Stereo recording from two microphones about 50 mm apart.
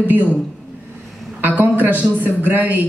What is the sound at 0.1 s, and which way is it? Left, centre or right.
Speech, right.